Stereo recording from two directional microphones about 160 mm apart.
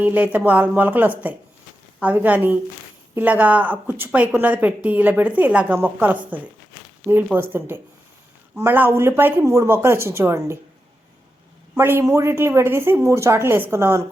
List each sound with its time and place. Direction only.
0.0 s speech: 10° right (ahead or behind)
11.8 s speech: 15° right (ahead or behind)